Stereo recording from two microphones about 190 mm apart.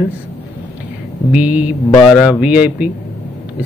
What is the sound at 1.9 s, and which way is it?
Speech, 20° left (ahead or behind).